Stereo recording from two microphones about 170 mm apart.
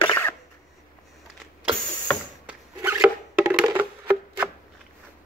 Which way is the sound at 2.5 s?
5° right (ahead or behind).